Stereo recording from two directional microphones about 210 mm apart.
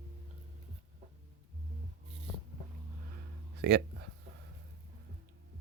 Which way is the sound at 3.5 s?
50° right (ahead or behind).